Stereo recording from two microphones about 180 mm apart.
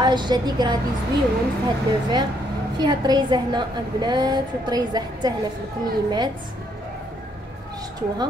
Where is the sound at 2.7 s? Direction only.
25° right (ahead or behind).